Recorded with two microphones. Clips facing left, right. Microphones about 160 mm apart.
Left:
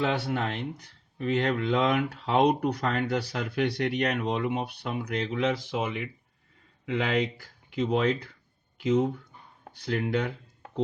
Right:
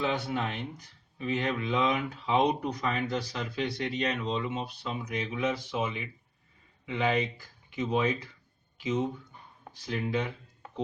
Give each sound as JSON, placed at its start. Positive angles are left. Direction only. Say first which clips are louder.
{"t": 0.0, "sound": "speech", "louder": "left 3 dB", "side_deg": 70}